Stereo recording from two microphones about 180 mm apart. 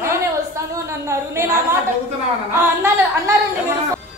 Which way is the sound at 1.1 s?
15° right (ahead or behind).